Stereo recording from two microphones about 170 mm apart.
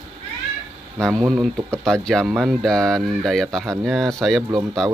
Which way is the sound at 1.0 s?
Centre (ahead or behind).